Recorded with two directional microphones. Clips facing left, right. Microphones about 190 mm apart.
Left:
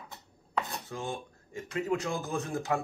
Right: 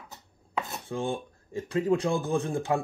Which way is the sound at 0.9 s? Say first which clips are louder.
Right 8 dB; 30° right (ahead or behind).